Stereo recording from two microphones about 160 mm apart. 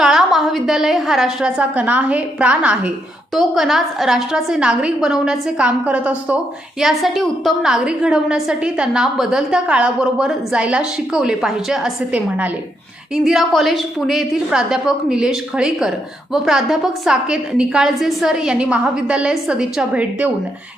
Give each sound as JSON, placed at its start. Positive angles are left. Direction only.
{"t": 0.0, "sound": "a woman's voice", "side_deg": -5}